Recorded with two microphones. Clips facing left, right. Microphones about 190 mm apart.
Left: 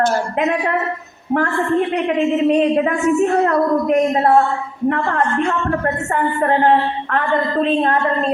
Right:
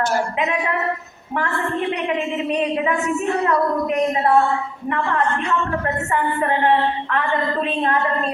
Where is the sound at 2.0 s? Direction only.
50° left (ahead or behind).